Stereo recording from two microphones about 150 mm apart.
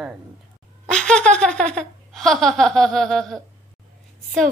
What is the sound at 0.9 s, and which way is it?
Laughter, 5° left (ahead or behind).